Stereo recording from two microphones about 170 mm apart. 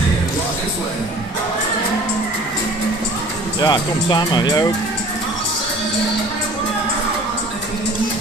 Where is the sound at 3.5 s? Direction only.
25° left (ahead or behind).